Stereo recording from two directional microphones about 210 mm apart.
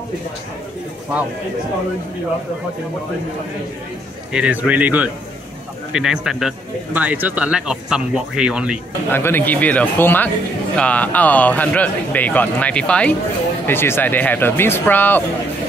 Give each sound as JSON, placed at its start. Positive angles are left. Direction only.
{"t": 4.3, "sound": "a man's voice", "side_deg": -5}
{"t": 9.1, "sound": "a man's voice", "side_deg": 10}